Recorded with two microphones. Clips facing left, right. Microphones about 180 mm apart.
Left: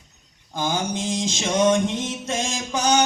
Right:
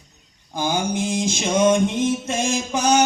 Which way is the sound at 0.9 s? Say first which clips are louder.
Right 3 dB; 20° left (ahead or behind).